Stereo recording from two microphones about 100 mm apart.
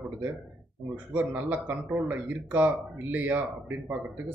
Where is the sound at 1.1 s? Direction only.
20° right (ahead or behind).